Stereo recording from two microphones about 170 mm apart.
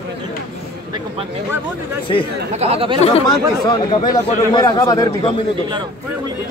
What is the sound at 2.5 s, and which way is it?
Speech, 35° right (ahead or behind).